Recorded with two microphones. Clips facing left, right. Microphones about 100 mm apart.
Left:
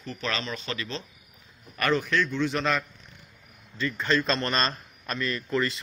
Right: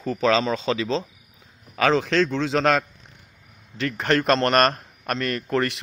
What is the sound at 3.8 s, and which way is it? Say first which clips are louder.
A man's voice: right 4 dB; 75° right (ahead or behind).